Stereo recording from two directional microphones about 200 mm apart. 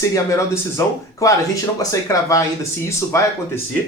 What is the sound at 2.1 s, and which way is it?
A man's voice, 15° left (ahead or behind).